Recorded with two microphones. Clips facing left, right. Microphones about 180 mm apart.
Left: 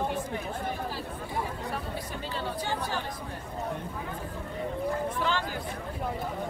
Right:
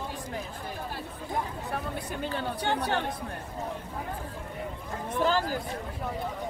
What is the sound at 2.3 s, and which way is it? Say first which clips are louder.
Speech: right 2 dB; 65° right (ahead or behind).